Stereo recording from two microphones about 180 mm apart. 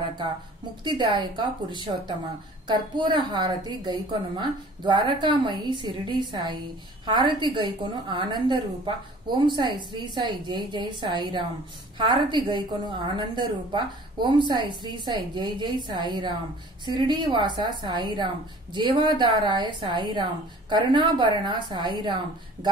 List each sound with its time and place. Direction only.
0.8 s a woman's voice: 25° right (ahead or behind)